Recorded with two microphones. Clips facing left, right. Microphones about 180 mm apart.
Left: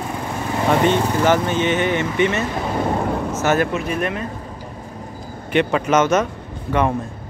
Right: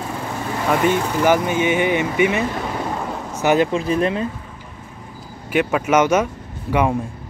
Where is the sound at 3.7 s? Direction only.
30° right (ahead or behind).